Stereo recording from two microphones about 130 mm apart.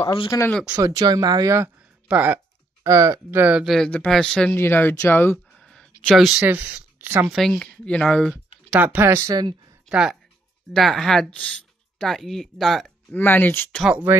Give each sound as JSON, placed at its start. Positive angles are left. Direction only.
{"t": 0.3, "sound": "speech", "side_deg": 30}
{"t": 0.7, "sound": "speech", "side_deg": -30}
{"t": 2.0, "sound": "speech", "side_deg": -10}
{"t": 2.8, "sound": "speech", "side_deg": -25}
{"t": 3.6, "sound": "speech", "side_deg": 0}
{"t": 4.6, "sound": "speech", "side_deg": 15}
{"t": 5.7, "sound": "a sound", "side_deg": 5}
{"t": 6.4, "sound": "speech", "side_deg": -15}
{"t": 7.3, "sound": "speech", "side_deg": 5}
{"t": 8.7, "sound": "speech", "side_deg": -10}
{"t": 9.8, "sound": "speech", "side_deg": -5}
{"t": 10.7, "sound": "speech", "side_deg": 5}
{"t": 13.1, "sound": "speech", "side_deg": 15}
{"t": 13.8, "sound": "speech", "side_deg": -10}